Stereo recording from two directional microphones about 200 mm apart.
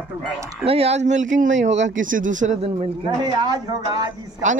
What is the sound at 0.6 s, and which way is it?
A man's voice, 30° right (ahead or behind).